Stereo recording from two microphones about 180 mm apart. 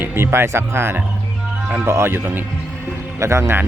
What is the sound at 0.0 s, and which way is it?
Speech, 15° right (ahead or behind).